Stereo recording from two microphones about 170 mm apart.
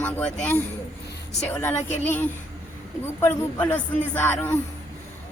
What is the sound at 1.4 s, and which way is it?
Speech, 5° left (ahead or behind).